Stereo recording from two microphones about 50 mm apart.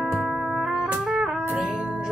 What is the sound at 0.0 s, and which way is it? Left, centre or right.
Music, centre.